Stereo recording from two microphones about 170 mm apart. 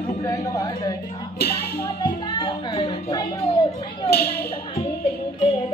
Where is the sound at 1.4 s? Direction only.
65° left (ahead or behind).